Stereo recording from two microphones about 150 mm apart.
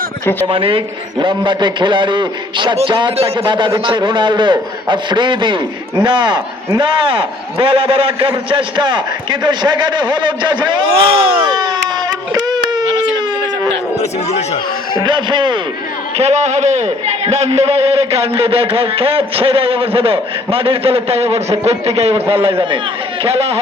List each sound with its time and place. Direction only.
0.4 s a man's voice: 35° right (ahead or behind)
11.5 s a sound: 25° right (ahead or behind)
14.0 s speech: 45° left (ahead or behind)
15.0 s a man's voice: 30° right (ahead or behind)
16.1 s a man's voice: 45° right (ahead or behind)